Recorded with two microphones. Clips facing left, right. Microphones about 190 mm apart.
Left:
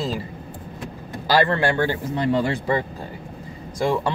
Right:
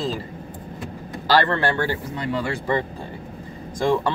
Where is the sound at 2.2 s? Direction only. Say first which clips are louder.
Left 7 dB; 25° left (ahead or behind).